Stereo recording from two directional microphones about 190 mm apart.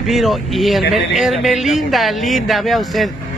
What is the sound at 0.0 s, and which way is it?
Speech, centre (ahead or behind).